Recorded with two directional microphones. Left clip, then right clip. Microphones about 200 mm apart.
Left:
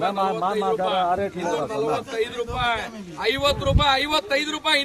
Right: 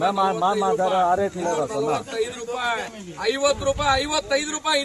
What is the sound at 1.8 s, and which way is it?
Speech, 35° right (ahead or behind).